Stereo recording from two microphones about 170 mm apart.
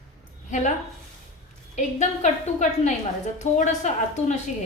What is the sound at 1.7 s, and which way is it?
A woman's voice, 45° left (ahead or behind).